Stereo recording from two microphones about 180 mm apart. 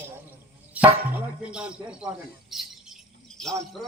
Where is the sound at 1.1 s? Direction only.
5° right (ahead or behind).